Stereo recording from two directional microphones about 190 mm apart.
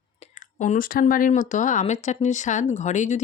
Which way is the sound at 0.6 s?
45° left (ahead or behind).